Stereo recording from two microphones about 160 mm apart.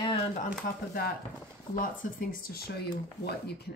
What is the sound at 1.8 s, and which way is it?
Speech, 65° left (ahead or behind).